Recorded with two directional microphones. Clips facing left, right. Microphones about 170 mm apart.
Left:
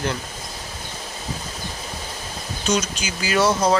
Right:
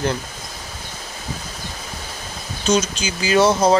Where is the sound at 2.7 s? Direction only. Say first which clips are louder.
Right 4 dB; 30° right (ahead or behind).